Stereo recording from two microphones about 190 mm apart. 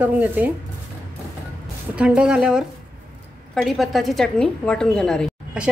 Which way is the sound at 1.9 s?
5° right (ahead or behind).